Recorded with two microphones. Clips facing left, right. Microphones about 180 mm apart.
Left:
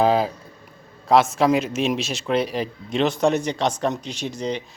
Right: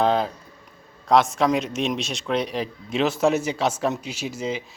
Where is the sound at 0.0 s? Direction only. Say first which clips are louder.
Left 2 dB; 5° left (ahead or behind).